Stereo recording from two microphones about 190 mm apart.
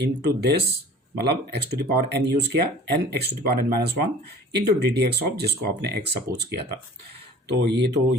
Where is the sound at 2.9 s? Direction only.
60° right (ahead or behind).